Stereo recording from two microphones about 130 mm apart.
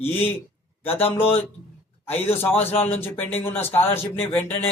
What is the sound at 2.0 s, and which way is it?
A man's voice, 15° left (ahead or behind).